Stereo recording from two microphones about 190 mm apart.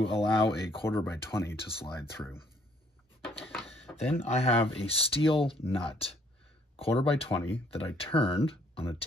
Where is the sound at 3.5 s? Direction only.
5° left (ahead or behind).